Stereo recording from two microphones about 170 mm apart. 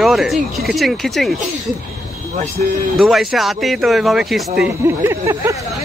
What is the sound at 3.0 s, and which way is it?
Speech, centre (ahead or behind).